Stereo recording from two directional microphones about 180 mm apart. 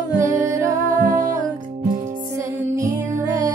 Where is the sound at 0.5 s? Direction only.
15° right (ahead or behind).